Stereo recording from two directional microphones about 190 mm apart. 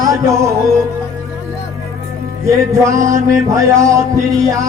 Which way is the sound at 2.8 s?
15° right (ahead or behind).